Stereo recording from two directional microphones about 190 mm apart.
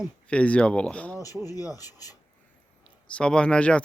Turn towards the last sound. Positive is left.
turn(degrees=5)  # may be behind; listen again after turning